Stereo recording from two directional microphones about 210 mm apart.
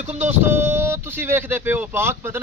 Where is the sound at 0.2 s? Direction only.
10° right (ahead or behind).